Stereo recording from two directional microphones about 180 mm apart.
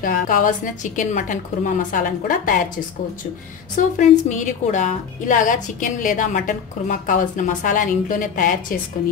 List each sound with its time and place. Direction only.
0.0 s a woman's voice: 50° left (ahead or behind)